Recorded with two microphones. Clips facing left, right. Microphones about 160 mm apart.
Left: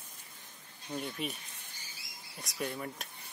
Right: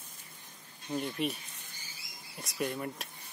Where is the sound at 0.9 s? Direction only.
Centre (ahead or behind).